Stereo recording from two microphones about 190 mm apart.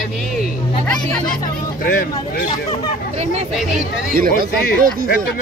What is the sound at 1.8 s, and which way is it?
Speech, 50° left (ahead or behind).